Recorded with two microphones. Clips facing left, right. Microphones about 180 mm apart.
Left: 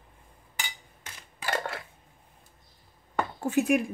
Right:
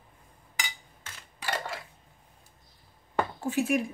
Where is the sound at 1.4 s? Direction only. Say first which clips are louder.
Left 2 dB; 55° left (ahead or behind).